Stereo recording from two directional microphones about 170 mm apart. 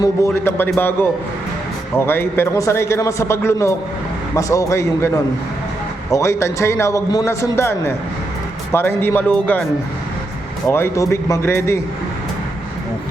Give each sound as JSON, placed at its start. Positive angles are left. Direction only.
{"t": 0.0, "sound": "a man's voice", "side_deg": 15}
{"t": 10.7, "sound": "a man's voice", "side_deg": 15}